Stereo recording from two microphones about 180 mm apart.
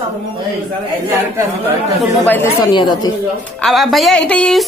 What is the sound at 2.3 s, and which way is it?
Speech, 10° left (ahead or behind).